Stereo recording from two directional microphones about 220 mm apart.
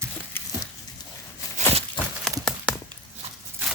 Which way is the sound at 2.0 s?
20° left (ahead or behind).